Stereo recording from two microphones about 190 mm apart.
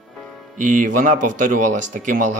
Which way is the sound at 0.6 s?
45° right (ahead or behind).